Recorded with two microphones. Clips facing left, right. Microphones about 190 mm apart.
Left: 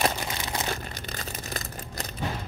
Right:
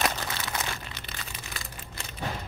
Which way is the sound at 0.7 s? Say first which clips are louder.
Left 5 dB; 40° left (ahead or behind).